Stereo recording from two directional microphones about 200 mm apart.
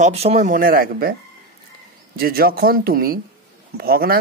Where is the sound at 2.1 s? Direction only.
50° right (ahead or behind).